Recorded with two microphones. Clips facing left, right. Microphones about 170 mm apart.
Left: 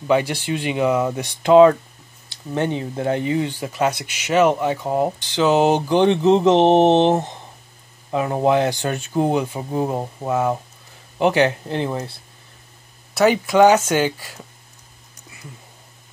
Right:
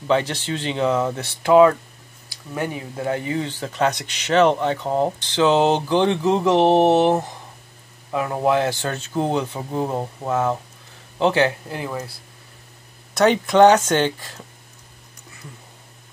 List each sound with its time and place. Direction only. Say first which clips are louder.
0.0 s speech: left 2 dB; 10° left (ahead or behind)
13.1 s speech: even; 5° left (ahead or behind)